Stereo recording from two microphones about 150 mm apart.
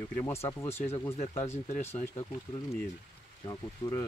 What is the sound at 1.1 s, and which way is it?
Speech, 45° left (ahead or behind).